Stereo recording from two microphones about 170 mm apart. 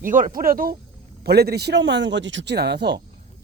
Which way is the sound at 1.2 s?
70° right (ahead or behind).